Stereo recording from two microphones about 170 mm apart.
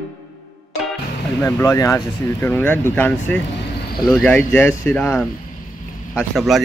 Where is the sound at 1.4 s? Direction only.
20° left (ahead or behind).